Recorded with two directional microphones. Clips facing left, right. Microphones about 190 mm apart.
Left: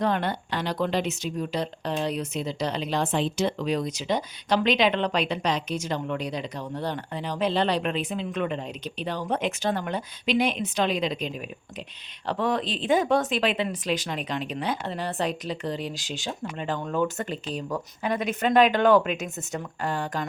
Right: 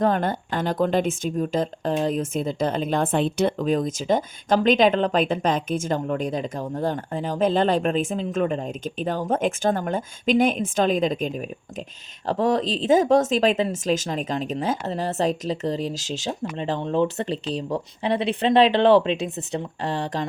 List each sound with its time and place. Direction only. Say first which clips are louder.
0.0 s speech: right 4 dB; 45° right (ahead or behind)
16.4 s speech: right 2 dB; 30° right (ahead or behind)